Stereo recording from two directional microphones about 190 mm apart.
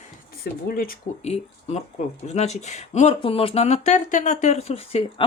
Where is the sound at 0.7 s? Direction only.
50° left (ahead or behind).